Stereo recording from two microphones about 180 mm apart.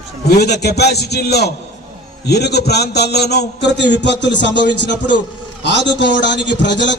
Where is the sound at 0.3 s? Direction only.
65° left (ahead or behind).